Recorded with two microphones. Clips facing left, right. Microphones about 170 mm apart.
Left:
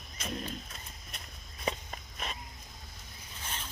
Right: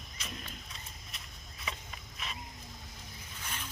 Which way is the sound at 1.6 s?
40° left (ahead or behind).